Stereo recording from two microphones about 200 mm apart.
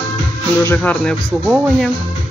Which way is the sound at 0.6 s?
10° left (ahead or behind).